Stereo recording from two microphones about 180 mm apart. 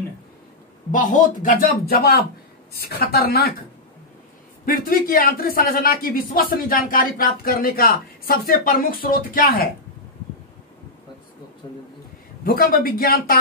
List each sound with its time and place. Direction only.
0.9 s a man's voice: 45° left (ahead or behind)
4.6 s speech: 50° left (ahead or behind)
12.4 s a man's voice: 55° left (ahead or behind)